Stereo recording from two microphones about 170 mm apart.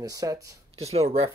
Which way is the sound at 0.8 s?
35° right (ahead or behind).